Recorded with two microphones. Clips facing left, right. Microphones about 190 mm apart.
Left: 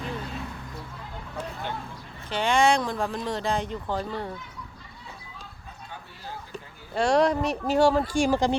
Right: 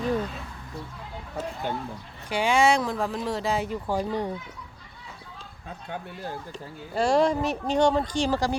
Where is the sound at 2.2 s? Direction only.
10° right (ahead or behind).